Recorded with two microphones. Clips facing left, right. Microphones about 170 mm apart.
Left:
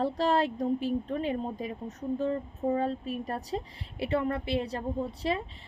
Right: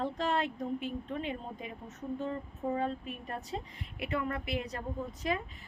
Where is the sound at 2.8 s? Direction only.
35° left (ahead or behind).